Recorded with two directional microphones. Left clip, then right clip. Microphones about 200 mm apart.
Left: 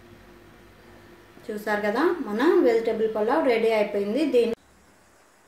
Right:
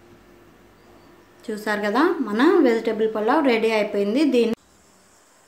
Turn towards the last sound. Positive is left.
turn(degrees=-45)  # may be behind; listen again after turning